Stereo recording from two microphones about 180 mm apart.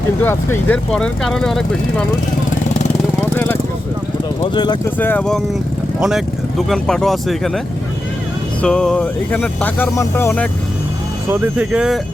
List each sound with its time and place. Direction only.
0.2 s speech: 10° left (ahead or behind)
3.3 s vehicle: 10° left (ahead or behind)
4.5 s speech: 25° left (ahead or behind)
4.9 s speech: 10° left (ahead or behind)
8.6 s speech: 5° left (ahead or behind)
11.3 s speech: 10° right (ahead or behind)